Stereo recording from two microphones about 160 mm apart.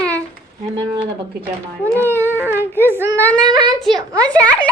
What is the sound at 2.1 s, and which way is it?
Babbling, 15° right (ahead or behind).